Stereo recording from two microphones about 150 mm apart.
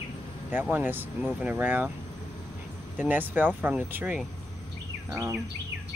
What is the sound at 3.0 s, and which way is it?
Speech, 10° right (ahead or behind).